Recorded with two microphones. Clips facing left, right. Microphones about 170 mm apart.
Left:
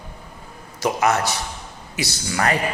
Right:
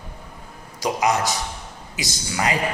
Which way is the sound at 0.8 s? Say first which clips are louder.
Left 1 dB; 15° right (ahead or behind).